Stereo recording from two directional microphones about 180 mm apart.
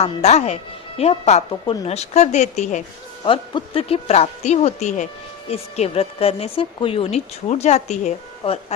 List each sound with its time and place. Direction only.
0.0 s a woman's voice: 40° left (ahead or behind)
3.2 s a woman's voice: 30° left (ahead or behind)